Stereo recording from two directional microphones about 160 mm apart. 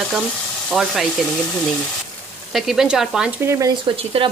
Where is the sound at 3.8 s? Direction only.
35° right (ahead or behind).